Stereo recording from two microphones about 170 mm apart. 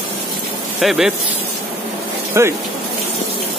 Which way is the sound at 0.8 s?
5° right (ahead or behind).